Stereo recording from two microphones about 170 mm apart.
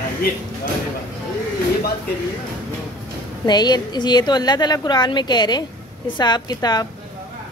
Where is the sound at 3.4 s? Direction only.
25° left (ahead or behind).